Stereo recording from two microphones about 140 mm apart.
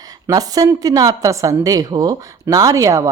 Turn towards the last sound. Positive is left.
turn(degrees=-20)  # may be behind; listen again after turning